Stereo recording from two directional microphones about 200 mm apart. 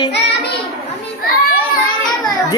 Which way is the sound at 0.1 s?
55° left (ahead or behind).